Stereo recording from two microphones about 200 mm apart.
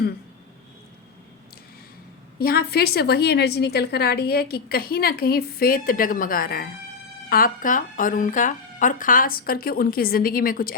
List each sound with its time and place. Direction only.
2.4 s a woman's voice: 50° left (ahead or behind)